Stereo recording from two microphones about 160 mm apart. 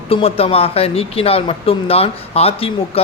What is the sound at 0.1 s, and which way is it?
Speech, 35° left (ahead or behind).